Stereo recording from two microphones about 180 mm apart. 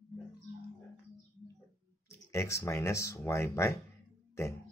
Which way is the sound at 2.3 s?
15° left (ahead or behind).